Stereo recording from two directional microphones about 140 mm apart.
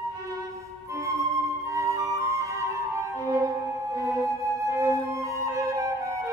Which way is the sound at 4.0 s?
20° right (ahead or behind).